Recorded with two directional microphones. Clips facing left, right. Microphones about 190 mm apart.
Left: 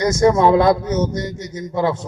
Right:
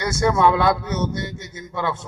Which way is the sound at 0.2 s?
40° left (ahead or behind).